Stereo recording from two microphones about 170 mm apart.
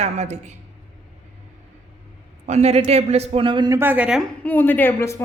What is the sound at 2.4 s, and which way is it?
Speech, 40° right (ahead or behind).